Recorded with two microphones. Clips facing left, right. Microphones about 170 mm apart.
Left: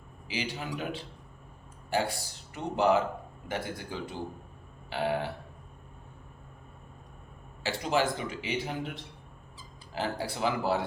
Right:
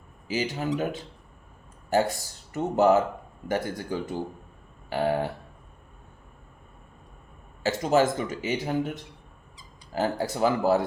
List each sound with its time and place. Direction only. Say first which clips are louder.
0.3 s speech: right 7 dB; 45° right (ahead or behind)
1.9 s speech: right 6 dB; 45° right (ahead or behind)
7.6 s speech: right 6 dB; 45° right (ahead or behind)
9.9 s speech: right 6 dB; 45° right (ahead or behind)